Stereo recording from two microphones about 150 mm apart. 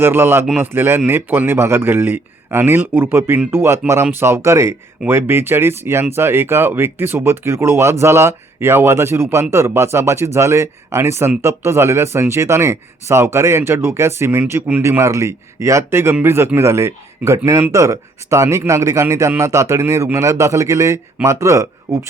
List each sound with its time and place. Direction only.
0.0 s speech: 15° right (ahead or behind)